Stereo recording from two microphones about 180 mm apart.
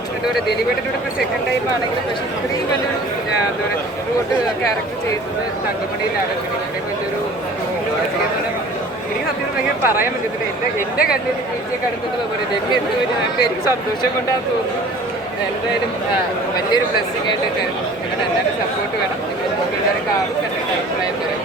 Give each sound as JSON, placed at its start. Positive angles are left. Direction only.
{"t": 9.8, "sound": "speech", "side_deg": -10}
{"t": 10.9, "sound": "speech", "side_deg": 55}